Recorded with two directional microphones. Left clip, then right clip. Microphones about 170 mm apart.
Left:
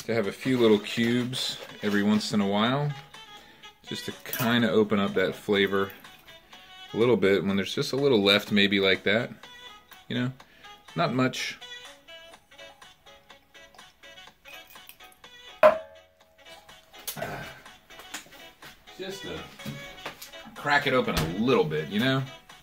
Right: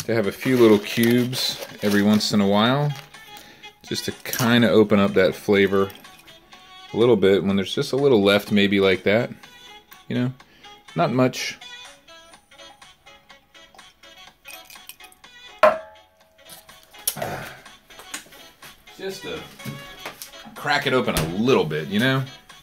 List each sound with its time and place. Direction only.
0.0 s speech: 45° right (ahead or behind)
3.9 s speech: 45° right (ahead or behind)
6.9 s speech: 20° right (ahead or behind)
20.6 s speech: 65° right (ahead or behind)